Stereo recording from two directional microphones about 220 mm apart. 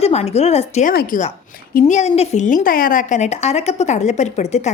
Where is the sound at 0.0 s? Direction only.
30° left (ahead or behind).